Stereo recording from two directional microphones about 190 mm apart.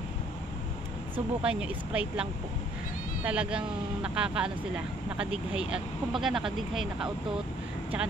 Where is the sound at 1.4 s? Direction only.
5° right (ahead or behind).